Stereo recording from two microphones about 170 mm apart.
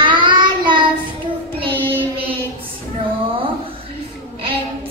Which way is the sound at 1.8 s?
10° right (ahead or behind).